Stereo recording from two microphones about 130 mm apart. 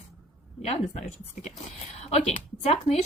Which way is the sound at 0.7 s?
55° left (ahead or behind).